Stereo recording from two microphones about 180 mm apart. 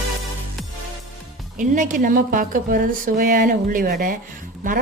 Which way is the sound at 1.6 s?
45° right (ahead or behind).